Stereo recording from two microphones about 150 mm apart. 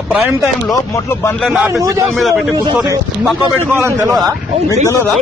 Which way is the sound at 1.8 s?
20° right (ahead or behind).